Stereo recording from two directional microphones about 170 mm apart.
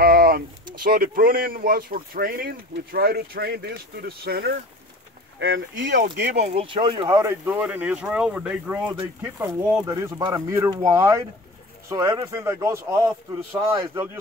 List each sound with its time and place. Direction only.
0.0 s a sound: 65° right (ahead or behind)
0.8 s speech: 60° right (ahead or behind)
5.4 s speech: 90° right
6.4 s speech: 35° right (ahead or behind); by 14.0 s 15° right (ahead or behind)